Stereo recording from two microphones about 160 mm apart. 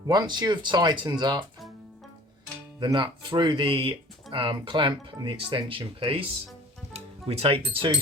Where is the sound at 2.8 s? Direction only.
30° right (ahead or behind).